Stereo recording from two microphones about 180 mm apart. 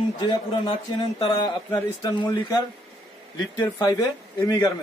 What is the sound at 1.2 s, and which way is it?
A man's voice, 25° left (ahead or behind).